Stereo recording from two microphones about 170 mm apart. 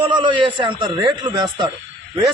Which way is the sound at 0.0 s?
30° right (ahead or behind).